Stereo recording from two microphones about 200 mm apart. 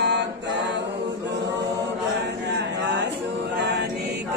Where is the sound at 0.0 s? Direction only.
60° right (ahead or behind).